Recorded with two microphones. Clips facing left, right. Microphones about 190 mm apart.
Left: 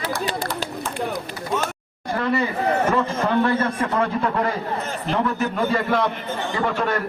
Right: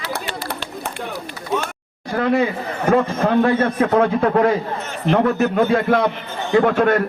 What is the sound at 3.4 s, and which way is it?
A man's voice, 55° right (ahead or behind).